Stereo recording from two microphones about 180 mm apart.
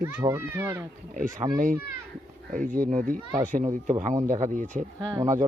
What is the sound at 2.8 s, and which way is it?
Speech, 45° right (ahead or behind).